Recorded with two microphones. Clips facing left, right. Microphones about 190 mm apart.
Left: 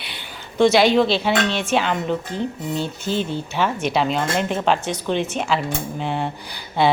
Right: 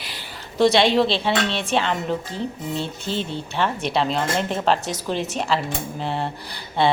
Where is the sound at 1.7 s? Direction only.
Centre (ahead or behind).